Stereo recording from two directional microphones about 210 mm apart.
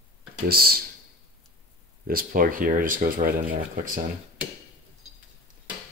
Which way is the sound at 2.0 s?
45° right (ahead or behind).